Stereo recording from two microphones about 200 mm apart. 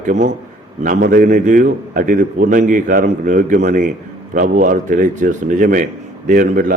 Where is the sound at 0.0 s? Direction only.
40° right (ahead or behind).